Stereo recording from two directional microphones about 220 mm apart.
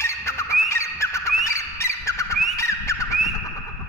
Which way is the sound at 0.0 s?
10° left (ahead or behind).